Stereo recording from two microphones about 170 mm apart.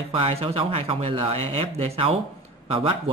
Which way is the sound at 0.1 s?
35° right (ahead or behind).